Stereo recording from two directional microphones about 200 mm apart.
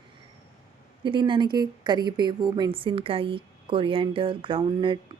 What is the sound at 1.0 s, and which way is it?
Speech, 25° right (ahead or behind).